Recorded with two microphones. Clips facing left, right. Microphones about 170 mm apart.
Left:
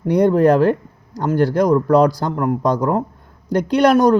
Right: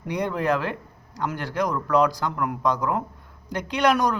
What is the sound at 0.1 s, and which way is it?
Speech, 40° left (ahead or behind).